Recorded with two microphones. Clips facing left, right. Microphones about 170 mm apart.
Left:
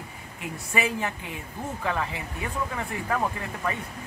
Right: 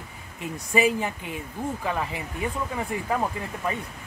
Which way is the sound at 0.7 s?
15° right (ahead or behind).